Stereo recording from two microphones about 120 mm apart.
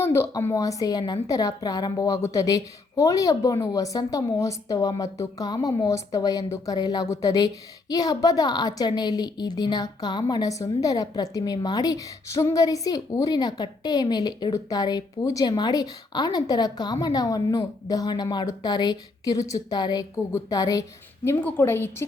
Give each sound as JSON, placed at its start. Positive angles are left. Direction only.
{"t": 0.0, "sound": "a woman's voice", "side_deg": 20}
{"t": 21.2, "sound": "a woman's voice", "side_deg": 15}